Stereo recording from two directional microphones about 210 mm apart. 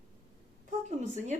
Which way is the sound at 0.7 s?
35° right (ahead or behind).